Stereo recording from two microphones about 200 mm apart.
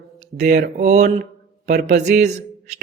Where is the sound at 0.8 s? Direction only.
35° right (ahead or behind).